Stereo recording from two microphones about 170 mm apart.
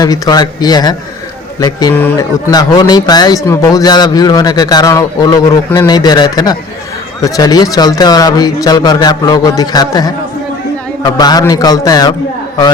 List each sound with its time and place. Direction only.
0.0 s speech: 20° left (ahead or behind)
2.0 s speech: 10° left (ahead or behind)
2.5 s speech: 25° left (ahead or behind)